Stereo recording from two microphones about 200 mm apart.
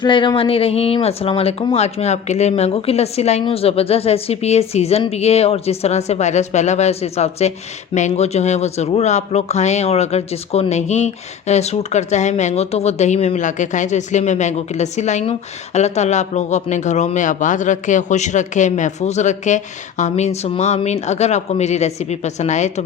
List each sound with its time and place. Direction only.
0.0 s speech: 25° left (ahead or behind)